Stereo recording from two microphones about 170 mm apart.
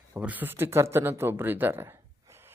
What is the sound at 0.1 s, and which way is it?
Speech, 10° right (ahead or behind).